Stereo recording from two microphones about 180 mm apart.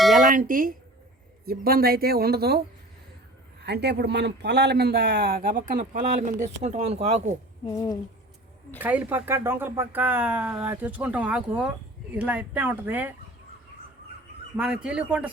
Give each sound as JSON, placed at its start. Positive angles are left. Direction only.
{"t": 0.2, "sound": "speech", "side_deg": -45}
{"t": 5.9, "sound": "speech", "side_deg": -40}
{"t": 7.7, "sound": "speech", "side_deg": 20}
{"t": 8.8, "sound": "speech", "side_deg": -10}
{"t": 14.5, "sound": "speech", "side_deg": -5}